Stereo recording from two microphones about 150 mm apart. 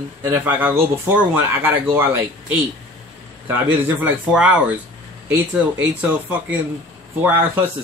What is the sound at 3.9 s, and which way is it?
Speech, 10° right (ahead or behind).